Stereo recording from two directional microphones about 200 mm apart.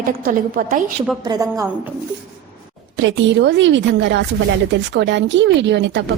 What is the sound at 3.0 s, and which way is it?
A woman's voice, 65° right (ahead or behind).